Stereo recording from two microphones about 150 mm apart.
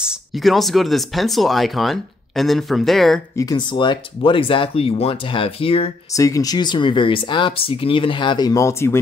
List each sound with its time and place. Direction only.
0.0 s speech: 5° right (ahead or behind)
3.3 s speech: 25° left (ahead or behind)
6.1 s speech: 20° left (ahead or behind)